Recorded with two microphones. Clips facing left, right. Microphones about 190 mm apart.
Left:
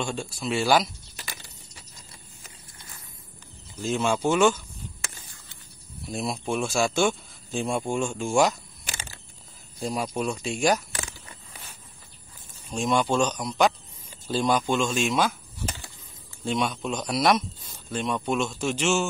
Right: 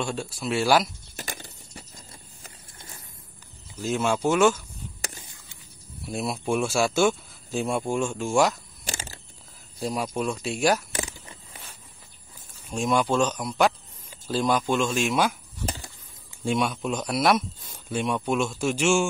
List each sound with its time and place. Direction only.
0.0 s speech: 5° right (ahead or behind)
1.1 s a sound: 50° right (ahead or behind)
3.8 s speech: 5° right (ahead or behind)
6.0 s speech: 5° right (ahead or behind)
8.8 s a sound: 40° right (ahead or behind)
9.8 s speech: centre (ahead or behind)
12.6 s speech: 5° right (ahead or behind)
16.4 s speech: 5° right (ahead or behind)